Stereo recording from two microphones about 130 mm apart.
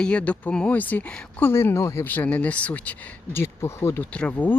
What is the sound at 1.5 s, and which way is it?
A woman's voice, 20° left (ahead or behind).